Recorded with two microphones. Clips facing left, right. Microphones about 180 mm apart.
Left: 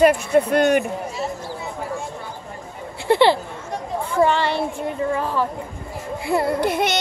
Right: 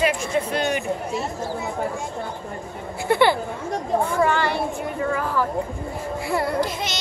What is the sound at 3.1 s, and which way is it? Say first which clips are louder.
Female singing: left 3 dB; 25° left (ahead or behind).